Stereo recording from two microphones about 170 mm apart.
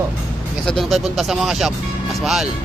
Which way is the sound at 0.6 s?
Centre (ahead or behind).